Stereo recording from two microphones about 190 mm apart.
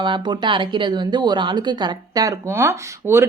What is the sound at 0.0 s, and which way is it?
Speech, 25° right (ahead or behind).